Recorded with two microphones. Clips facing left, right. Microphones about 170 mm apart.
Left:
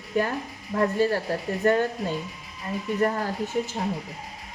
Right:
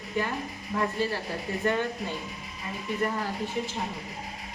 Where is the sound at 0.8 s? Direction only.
45° left (ahead or behind).